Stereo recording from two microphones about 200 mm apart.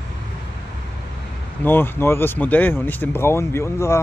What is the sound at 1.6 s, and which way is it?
Speech, 10° left (ahead or behind).